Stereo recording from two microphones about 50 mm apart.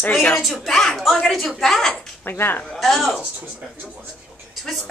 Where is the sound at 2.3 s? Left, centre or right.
Left.